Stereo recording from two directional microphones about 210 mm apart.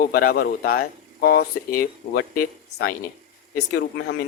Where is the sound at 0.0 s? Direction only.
40° left (ahead or behind).